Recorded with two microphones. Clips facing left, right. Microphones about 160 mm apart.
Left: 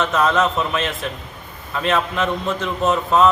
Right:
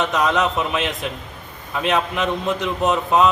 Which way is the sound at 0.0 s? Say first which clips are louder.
Left 1 dB; 15° right (ahead or behind).